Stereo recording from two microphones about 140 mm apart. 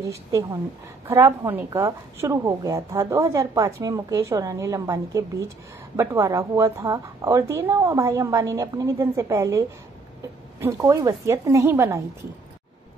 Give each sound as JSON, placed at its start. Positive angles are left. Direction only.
{"t": 0.0, "sound": "a woman's voice", "side_deg": -20}